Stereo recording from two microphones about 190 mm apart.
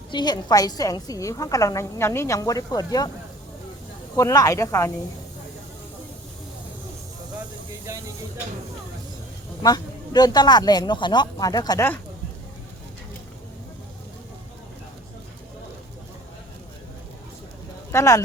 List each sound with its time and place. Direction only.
0.1 s a woman's voice: 20° left (ahead or behind)
4.2 s speech: 15° left (ahead or behind)
7.9 s a sound: 15° right (ahead or behind)
9.6 s a woman's voice: 20° left (ahead or behind)
17.9 s speech: 15° left (ahead or behind)